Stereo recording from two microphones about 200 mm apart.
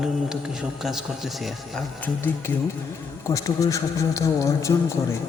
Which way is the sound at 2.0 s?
10° left (ahead or behind).